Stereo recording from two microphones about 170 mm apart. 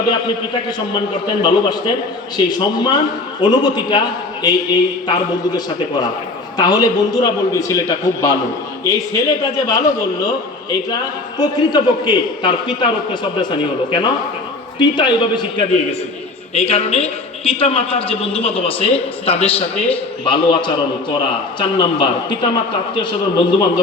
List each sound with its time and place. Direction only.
1.3 s a man's voice: 25° left (ahead or behind)
11.3 s a man's voice: 25° left (ahead or behind)
14.8 s a man's voice: 25° left (ahead or behind)